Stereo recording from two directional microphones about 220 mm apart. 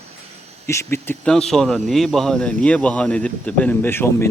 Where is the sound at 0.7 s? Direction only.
10° left (ahead or behind).